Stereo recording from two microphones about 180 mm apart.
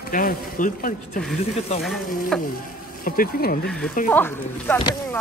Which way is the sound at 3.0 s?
55° left (ahead or behind).